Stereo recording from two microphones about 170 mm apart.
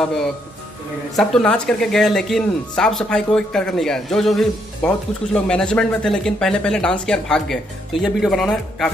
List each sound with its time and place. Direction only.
1.1 s speech: 5° left (ahead or behind)